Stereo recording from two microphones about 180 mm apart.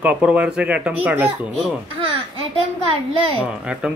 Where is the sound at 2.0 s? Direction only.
30° right (ahead or behind).